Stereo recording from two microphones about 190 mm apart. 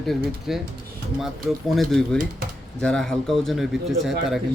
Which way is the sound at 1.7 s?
Centre (ahead or behind).